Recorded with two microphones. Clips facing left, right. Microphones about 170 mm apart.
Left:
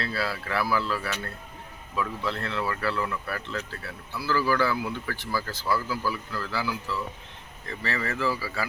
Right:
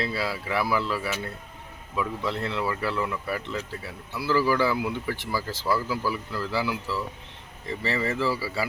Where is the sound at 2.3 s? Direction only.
20° right (ahead or behind).